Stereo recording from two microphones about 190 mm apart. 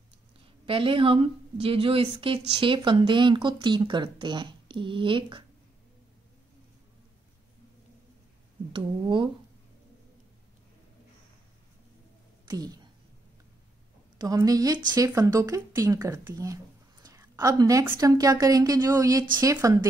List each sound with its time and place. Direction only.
0.7 s a woman's voice: 30° right (ahead or behind)
8.7 s a woman's voice: 25° right (ahead or behind)
12.4 s a woman's voice: 20° right (ahead or behind)
14.1 s a woman's voice: 20° right (ahead or behind)